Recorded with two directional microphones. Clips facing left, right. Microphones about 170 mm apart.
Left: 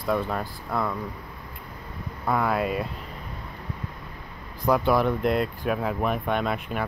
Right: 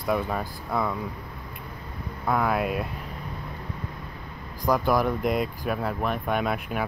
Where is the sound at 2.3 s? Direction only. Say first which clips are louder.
Even; centre (ahead or behind).